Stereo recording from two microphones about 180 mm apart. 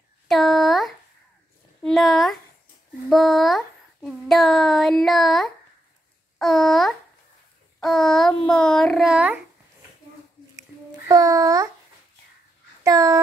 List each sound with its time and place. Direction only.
0.3 s a sound: centre (ahead or behind)
1.8 s speech: centre (ahead or behind)
3.1 s child singing: centre (ahead or behind)
11.1 s a child's voice: 20° right (ahead or behind)
12.8 s speech: 20° right (ahead or behind)